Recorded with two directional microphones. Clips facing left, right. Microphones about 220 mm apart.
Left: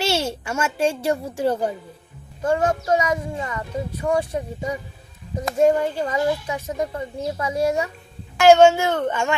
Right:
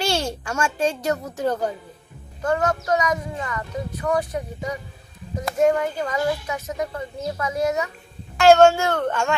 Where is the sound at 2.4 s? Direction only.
30° left (ahead or behind).